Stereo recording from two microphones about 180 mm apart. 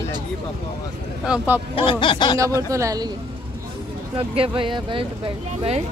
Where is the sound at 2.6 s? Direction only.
15° right (ahead or behind).